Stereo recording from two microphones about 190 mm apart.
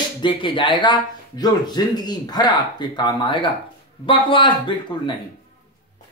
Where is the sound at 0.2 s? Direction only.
25° left (ahead or behind).